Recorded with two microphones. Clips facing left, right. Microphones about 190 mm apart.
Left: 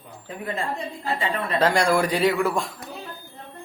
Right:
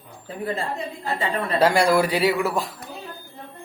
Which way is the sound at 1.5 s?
10° right (ahead or behind).